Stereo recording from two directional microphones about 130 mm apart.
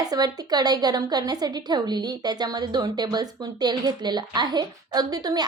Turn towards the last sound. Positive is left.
turn(degrees=-30)  # may be behind; listen again after turning